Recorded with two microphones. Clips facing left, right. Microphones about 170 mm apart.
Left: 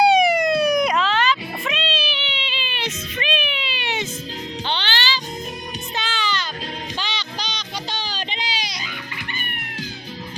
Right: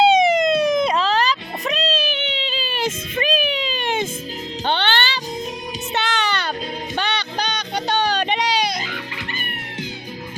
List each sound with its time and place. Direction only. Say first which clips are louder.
0.0 s music: right 1 dB; 20° right (ahead or behind); by 5.2 s 55° right (ahead or behind)
5.9 s music: right 4 dB; 70° right (ahead or behind)